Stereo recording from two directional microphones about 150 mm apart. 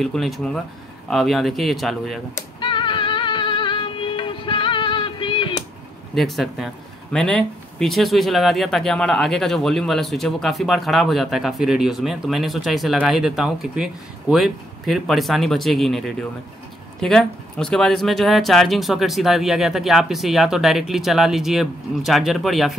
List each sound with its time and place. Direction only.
0.0 s speech: centre (ahead or behind)
2.6 s music: 35° left (ahead or behind)
6.1 s speech: centre (ahead or behind)